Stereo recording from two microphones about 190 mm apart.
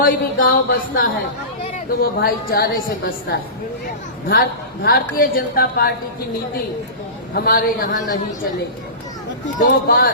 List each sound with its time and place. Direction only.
0.0 s speech: 50° left (ahead or behind)
4.3 s a woman's voice: 55° left (ahead or behind)
7.3 s speech: 50° left (ahead or behind)
9.6 s speech: 50° left (ahead or behind)